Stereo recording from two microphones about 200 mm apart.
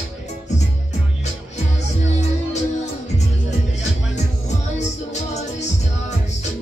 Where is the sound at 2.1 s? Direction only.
35° left (ahead or behind).